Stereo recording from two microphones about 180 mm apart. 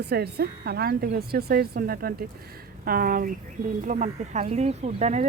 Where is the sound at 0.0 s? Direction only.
65° right (ahead or behind).